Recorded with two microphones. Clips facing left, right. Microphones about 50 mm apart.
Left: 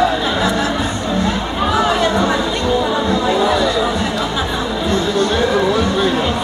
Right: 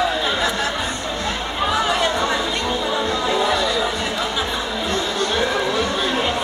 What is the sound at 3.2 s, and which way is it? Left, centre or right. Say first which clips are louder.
Chatter: left 4 dB; centre.